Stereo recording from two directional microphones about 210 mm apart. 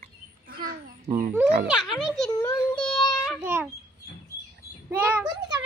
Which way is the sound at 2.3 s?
15° left (ahead or behind).